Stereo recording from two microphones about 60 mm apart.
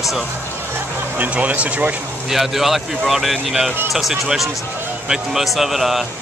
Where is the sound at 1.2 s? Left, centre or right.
Right.